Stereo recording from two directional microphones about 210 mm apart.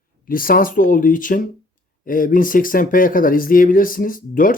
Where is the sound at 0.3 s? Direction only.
40° left (ahead or behind).